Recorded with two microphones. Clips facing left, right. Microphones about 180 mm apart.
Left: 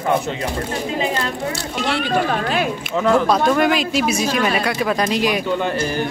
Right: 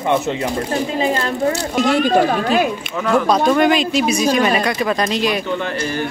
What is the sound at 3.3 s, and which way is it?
Speech, centre (ahead or behind).